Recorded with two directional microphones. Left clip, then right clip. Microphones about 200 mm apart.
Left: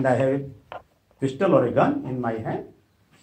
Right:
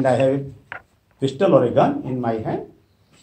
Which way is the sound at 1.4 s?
10° right (ahead or behind).